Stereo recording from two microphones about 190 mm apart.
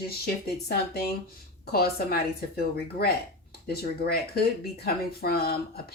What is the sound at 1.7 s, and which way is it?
Speech, 55° left (ahead or behind).